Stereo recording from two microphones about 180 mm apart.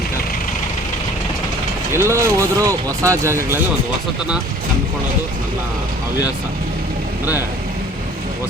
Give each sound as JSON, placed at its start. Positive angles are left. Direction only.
{"t": 1.9, "sound": "speech", "side_deg": -15}